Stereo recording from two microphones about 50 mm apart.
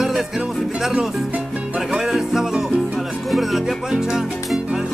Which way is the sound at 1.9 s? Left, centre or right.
Centre.